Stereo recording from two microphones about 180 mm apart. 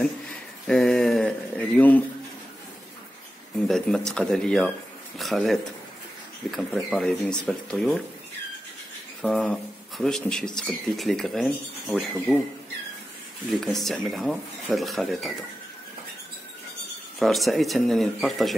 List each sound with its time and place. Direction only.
0.7 s speech: centre (ahead or behind)
3.6 s speech: centre (ahead or behind)
9.2 s speech: 5° left (ahead or behind)
13.5 s speech: centre (ahead or behind)
17.2 s speech: centre (ahead or behind)